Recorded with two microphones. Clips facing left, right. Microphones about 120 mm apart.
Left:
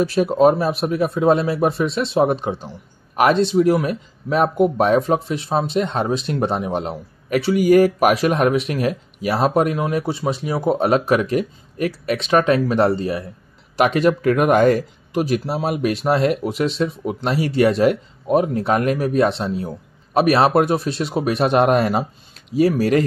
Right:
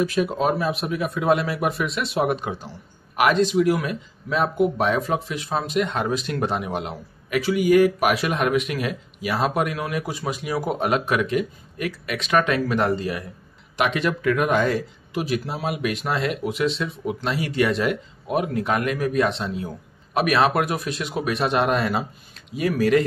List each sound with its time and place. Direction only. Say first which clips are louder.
0.0 s speech: left 7 dB; 35° left (ahead or behind)